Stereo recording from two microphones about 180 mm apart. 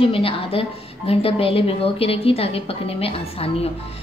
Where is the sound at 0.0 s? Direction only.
30° left (ahead or behind).